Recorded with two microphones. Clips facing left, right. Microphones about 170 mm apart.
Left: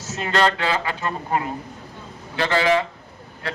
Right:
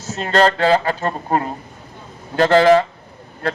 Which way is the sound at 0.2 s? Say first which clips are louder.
Right 5 dB; 40° right (ahead or behind).